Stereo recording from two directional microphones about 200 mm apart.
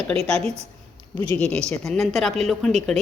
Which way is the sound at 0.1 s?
5° left (ahead or behind).